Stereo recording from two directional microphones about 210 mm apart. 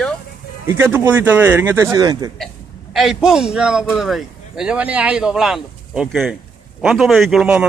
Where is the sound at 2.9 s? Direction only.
Centre (ahead or behind).